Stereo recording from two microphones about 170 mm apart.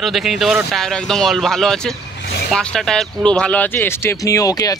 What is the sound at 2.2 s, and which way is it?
Vehicle, 80° left.